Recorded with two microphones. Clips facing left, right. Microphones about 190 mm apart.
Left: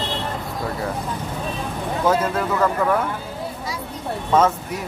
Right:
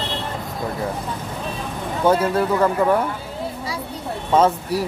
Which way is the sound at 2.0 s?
30° right (ahead or behind).